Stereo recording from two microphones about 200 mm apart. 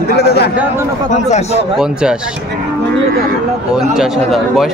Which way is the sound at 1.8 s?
5° right (ahead or behind).